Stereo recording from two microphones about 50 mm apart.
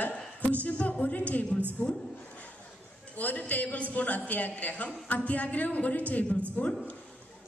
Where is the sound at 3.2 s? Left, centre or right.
Left.